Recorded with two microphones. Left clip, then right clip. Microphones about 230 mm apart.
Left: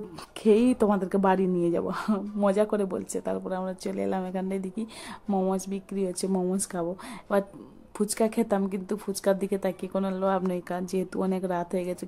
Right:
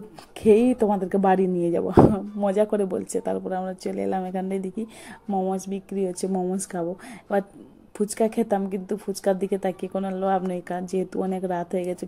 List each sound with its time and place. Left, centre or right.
0.4 s speech: centre
5.3 s speech: centre
5.9 s speech: centre